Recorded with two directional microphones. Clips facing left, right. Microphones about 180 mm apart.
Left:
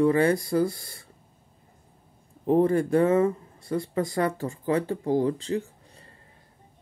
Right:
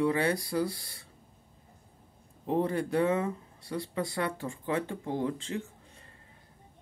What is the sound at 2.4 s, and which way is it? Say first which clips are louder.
Speech: left 8 dB; 45° left (ahead or behind).